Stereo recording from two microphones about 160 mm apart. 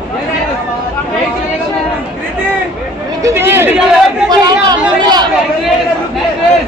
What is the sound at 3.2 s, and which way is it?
Speech, 15° right (ahead or behind).